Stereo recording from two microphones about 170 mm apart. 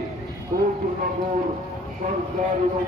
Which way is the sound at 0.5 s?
45° right (ahead or behind).